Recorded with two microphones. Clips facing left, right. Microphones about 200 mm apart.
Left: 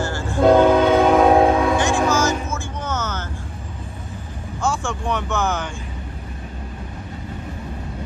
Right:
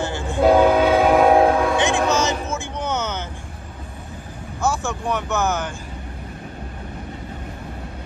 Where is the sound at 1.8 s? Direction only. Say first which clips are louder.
Left 1 dB; 20° right (ahead or behind).